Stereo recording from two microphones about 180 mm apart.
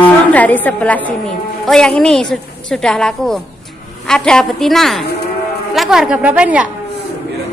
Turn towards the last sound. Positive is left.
turn(degrees=-5)  # may be behind; listen again after turning